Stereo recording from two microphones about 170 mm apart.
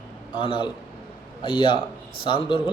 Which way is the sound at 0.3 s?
30° left (ahead or behind).